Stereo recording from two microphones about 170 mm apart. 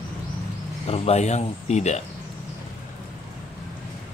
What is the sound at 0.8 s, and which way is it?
Speech, 35° left (ahead or behind).